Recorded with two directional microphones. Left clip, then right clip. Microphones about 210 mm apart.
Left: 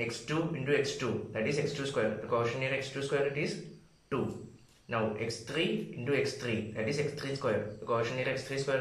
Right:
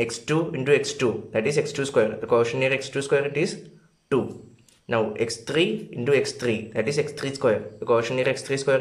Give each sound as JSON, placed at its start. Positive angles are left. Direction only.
{"t": 0.0, "sound": "speech", "side_deg": -45}
{"t": 4.8, "sound": "speech", "side_deg": -45}